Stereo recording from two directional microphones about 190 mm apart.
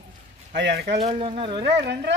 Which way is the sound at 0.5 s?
65° right (ahead or behind).